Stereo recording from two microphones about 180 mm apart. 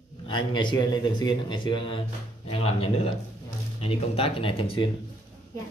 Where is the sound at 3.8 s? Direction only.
30° left (ahead or behind).